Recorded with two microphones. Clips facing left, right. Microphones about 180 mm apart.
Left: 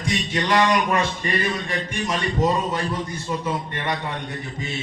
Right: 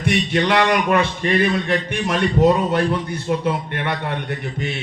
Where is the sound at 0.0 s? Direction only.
65° right (ahead or behind).